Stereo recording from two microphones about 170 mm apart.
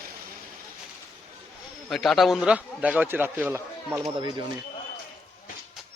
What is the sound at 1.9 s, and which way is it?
A man's voice, centre (ahead or behind).